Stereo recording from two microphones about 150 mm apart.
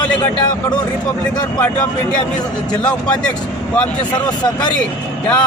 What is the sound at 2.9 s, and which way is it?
Speech, 5° left (ahead or behind).